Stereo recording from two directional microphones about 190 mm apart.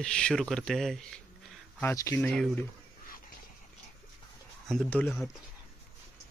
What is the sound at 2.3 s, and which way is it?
Speech, centre (ahead or behind).